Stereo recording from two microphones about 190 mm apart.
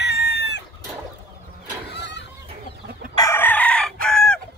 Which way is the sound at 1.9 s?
65° left (ahead or behind).